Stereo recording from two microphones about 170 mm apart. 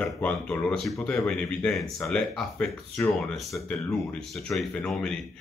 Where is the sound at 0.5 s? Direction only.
5° left (ahead or behind).